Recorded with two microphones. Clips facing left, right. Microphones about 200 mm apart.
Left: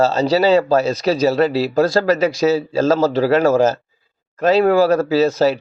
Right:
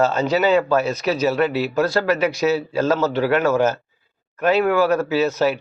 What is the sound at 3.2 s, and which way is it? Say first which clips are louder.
Speech: left 4 dB; 30° left (ahead or behind).